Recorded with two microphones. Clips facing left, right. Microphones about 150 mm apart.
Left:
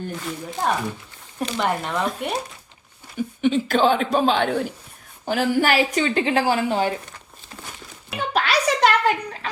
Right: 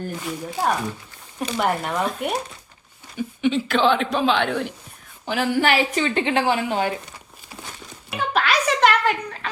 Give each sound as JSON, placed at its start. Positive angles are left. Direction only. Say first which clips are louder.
{"t": 0.2, "sound": "speech", "louder": "right 3 dB", "side_deg": -5}
{"t": 3.2, "sound": "a man's voice", "louder": "left 1 dB", "side_deg": 45}
{"t": 8.3, "sound": "a sound", "louder": "even", "side_deg": 40}